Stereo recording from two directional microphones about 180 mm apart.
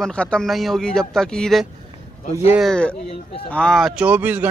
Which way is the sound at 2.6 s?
5° left (ahead or behind).